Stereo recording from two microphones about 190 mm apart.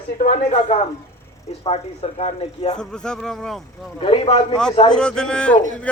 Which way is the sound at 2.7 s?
5° left (ahead or behind).